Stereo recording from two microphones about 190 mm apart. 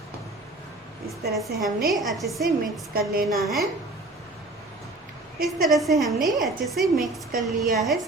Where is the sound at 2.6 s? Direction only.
50° right (ahead or behind).